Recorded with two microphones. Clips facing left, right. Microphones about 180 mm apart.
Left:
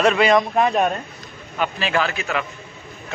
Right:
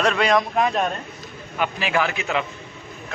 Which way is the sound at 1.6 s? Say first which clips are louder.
Left 1 dB; 15° right (ahead or behind).